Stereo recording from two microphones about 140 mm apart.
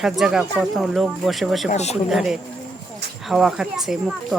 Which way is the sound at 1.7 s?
50° left (ahead or behind).